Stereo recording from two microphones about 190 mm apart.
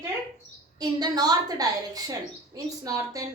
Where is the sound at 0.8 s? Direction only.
20° right (ahead or behind).